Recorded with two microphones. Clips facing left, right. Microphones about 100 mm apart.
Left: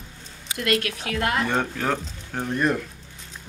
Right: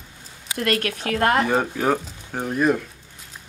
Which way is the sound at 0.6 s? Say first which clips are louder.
Right 1 dB; 40° right (ahead or behind).